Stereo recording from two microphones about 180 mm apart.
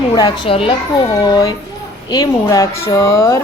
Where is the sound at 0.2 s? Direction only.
25° left (ahead or behind).